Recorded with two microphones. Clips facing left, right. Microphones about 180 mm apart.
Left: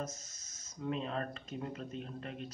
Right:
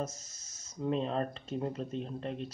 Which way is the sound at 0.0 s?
30° right (ahead or behind).